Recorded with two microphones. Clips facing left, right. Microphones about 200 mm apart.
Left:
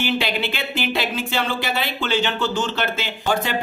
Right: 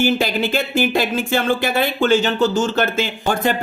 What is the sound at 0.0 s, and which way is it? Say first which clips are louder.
Speech: right 5 dB; 45° right (ahead or behind).